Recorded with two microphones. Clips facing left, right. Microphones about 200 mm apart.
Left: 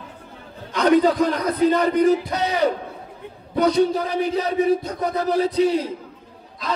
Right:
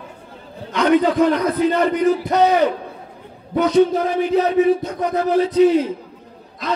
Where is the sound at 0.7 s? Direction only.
40° left (ahead or behind).